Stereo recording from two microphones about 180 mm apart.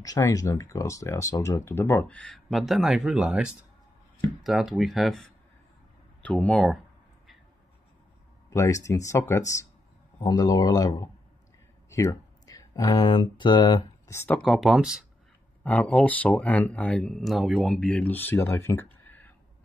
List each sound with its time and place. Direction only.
0.0 s speech: 20° left (ahead or behind); by 6.8 s centre (ahead or behind)
8.5 s speech: 15° left (ahead or behind)
14.4 s speech: centre (ahead or behind)
15.6 s speech: 5° left (ahead or behind)
19.0 s a sound: 10° left (ahead or behind)